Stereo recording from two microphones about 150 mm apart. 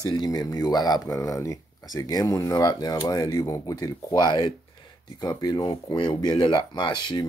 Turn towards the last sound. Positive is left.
turn(degrees=30)  # may be behind; listen again after turning